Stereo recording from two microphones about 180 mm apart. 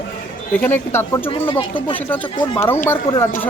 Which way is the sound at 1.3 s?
30° left (ahead or behind).